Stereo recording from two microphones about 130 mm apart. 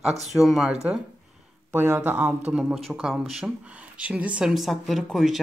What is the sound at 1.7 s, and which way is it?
Speech, 20° right (ahead or behind).